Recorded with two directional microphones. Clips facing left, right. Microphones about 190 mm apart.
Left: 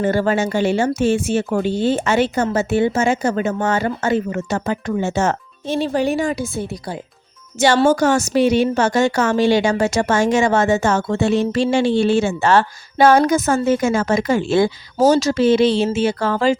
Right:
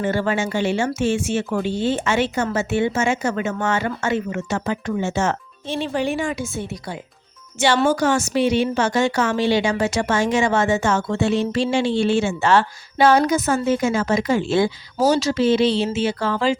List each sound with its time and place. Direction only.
0.0 s a woman's voice: 40° left (ahead or behind)